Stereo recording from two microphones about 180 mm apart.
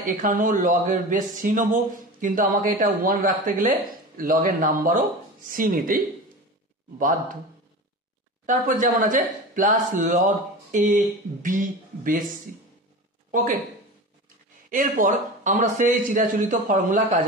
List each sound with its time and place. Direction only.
0.0 s speech: 50° right (ahead or behind)
8.5 s speech: 45° right (ahead or behind)
13.3 s speech: 50° right (ahead or behind)
14.7 s speech: 45° right (ahead or behind)